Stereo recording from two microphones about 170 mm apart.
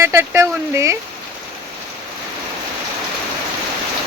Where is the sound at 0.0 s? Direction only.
15° right (ahead or behind).